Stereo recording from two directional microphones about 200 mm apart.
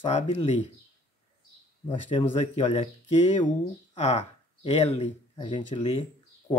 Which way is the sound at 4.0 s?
35° left (ahead or behind).